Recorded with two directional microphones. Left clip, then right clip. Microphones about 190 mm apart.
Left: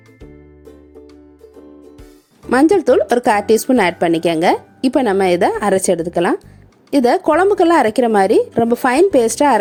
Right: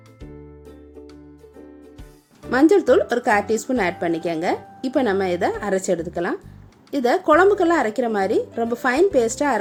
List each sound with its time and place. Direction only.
2.5 s speech: 45° left (ahead or behind)